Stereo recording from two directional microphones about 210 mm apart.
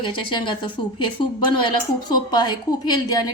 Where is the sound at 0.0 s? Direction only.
25° left (ahead or behind).